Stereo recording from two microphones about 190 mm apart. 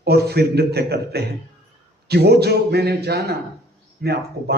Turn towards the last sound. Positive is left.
turn(degrees=-55)  # may be behind; listen again after turning